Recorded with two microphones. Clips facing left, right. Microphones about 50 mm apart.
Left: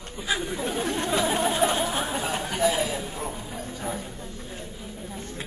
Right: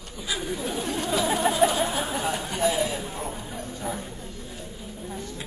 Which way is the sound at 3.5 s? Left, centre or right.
Left.